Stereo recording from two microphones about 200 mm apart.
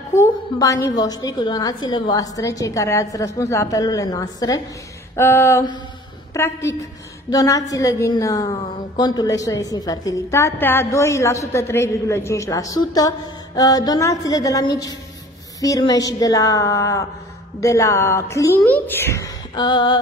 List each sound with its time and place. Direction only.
0.1 s a woman's voice: 15° left (ahead or behind)